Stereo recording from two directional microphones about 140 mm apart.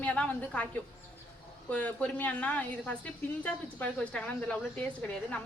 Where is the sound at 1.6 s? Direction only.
10° left (ahead or behind).